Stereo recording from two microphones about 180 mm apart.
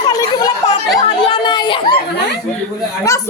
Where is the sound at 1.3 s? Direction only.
25° left (ahead or behind).